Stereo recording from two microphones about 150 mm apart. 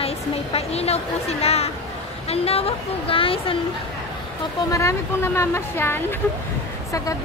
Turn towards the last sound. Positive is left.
turn(degrees=20)  # may be behind; listen again after turning